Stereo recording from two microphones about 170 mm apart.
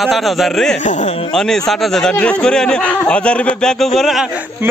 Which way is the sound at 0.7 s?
45° left (ahead or behind).